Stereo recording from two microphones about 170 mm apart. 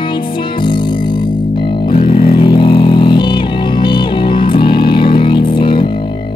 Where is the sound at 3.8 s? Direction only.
30° left (ahead or behind).